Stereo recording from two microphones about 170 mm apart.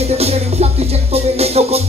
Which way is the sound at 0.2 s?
40° right (ahead or behind).